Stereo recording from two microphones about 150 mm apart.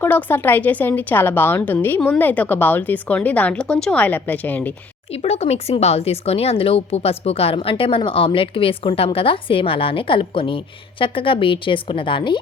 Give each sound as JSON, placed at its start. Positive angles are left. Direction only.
{"t": 0.0, "sound": "speech", "side_deg": 10}
{"t": 5.1, "sound": "a woman's voice", "side_deg": 45}